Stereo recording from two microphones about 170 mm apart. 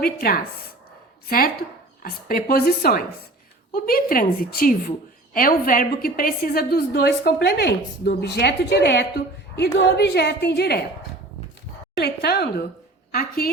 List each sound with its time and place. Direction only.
0.0 s a woman's voice: 65° left (ahead or behind)
2.0 s a woman's voice: 60° left (ahead or behind)
11.9 s a woman's voice: 70° left (ahead or behind)